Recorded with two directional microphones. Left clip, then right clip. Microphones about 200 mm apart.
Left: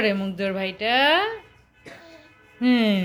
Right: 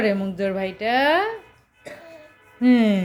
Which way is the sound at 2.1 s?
Centre (ahead or behind).